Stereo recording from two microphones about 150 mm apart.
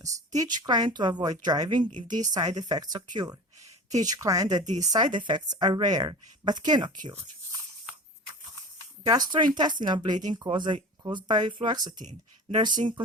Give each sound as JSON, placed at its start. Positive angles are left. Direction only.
{"t": 0.3, "sound": "speech", "side_deg": -25}
{"t": 9.0, "sound": "speech", "side_deg": -30}